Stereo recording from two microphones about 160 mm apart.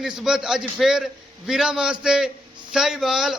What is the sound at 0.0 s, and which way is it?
A man's voice, 5° right (ahead or behind).